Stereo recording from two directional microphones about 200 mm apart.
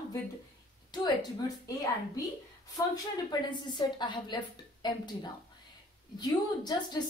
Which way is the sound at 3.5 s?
20° left (ahead or behind).